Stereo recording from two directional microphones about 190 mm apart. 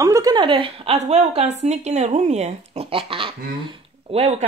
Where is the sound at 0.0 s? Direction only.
20° right (ahead or behind).